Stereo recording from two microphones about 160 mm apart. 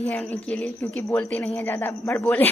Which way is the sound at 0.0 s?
10° left (ahead or behind).